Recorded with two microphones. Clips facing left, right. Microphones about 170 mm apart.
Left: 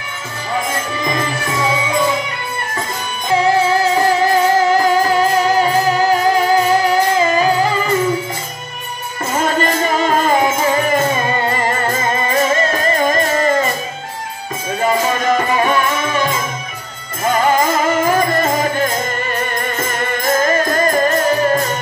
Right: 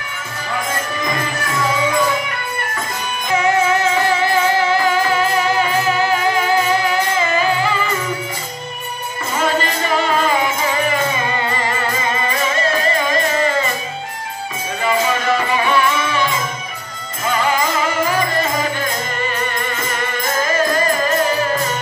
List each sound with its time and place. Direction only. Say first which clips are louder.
3.3 s music: left 2 dB; 30° left (ahead or behind)
9.4 s music: left 2 dB; 45° left (ahead or behind)
14.8 s music: left 2 dB; 45° left (ahead or behind)
17.3 s music: left 4 dB; 45° left (ahead or behind)
20.2 s music: left 3 dB; 50° left (ahead or behind)